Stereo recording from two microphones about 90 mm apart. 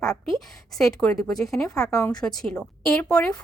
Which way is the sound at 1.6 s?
40° left (ahead or behind).